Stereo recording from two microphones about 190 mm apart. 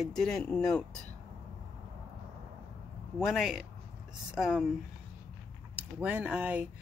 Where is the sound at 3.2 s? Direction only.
Centre (ahead or behind).